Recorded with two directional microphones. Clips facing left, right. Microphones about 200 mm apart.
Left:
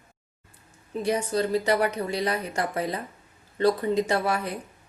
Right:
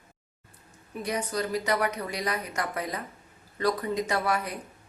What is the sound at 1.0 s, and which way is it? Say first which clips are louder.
A woman's voice: left 5 dB; 30° left (ahead or behind).